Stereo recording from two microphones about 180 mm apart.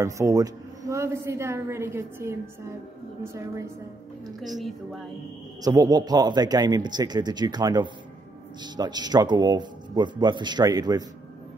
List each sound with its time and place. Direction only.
0.0 s a woman's voice: 20° right (ahead or behind)
5.6 s speech: 20° right (ahead or behind)